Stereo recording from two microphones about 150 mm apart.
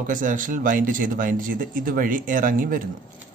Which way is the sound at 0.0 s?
60° right (ahead or behind).